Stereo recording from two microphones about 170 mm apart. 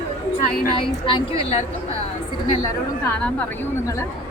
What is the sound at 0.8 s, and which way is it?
Speech, 30° left (ahead or behind).